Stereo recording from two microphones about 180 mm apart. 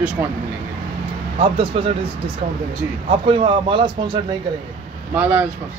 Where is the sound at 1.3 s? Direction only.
30° right (ahead or behind).